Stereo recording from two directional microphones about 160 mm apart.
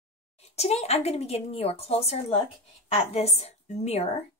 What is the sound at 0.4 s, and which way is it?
Speech, 40° left (ahead or behind).